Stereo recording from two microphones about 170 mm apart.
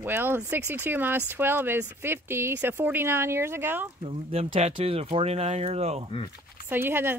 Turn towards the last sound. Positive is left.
turn(degrees=-15)  # may be behind; listen again after turning